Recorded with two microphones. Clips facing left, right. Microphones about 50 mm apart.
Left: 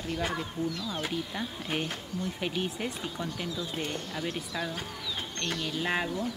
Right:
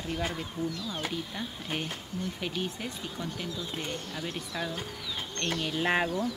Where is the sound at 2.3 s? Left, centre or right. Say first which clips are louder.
Left 4 dB; centre.